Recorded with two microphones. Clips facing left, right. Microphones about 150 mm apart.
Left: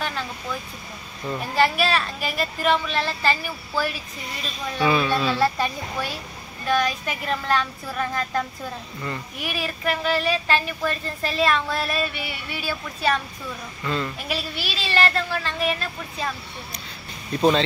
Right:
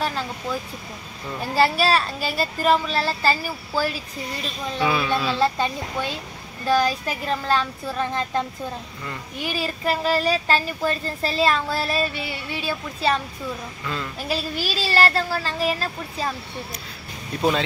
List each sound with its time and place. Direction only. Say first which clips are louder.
1.4 s a child's voice: right 2 dB; 35° right (ahead or behind)
4.7 s speech: left 2 dB; centre (ahead or behind)
5.4 s a child's voice: right 1 dB; 25° right (ahead or behind)
13.8 s speech: left 4 dB; centre (ahead or behind)
14.2 s a child's voice: right 3 dB; 40° right (ahead or behind)
17.4 s speech: left 3 dB; 5° right (ahead or behind)